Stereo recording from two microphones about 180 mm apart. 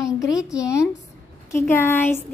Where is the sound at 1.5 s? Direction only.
15° left (ahead or behind).